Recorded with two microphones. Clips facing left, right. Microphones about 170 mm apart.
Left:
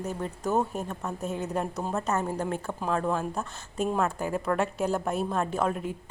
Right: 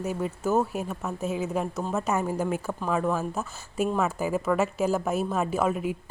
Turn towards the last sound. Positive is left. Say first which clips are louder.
# right 3 dB
turn(degrees=-5)  # may be behind; listen again after turning